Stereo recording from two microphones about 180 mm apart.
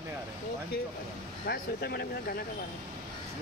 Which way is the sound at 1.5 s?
60° left (ahead or behind).